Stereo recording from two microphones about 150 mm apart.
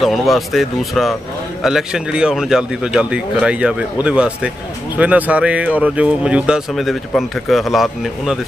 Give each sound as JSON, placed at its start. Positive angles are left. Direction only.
{"t": 0.0, "sound": "a man's voice", "side_deg": 0}